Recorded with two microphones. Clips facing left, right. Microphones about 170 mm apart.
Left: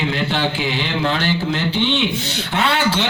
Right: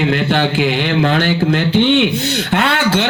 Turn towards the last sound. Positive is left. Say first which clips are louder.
# right 3 dB
turn(degrees=-55)  # may be behind; listen again after turning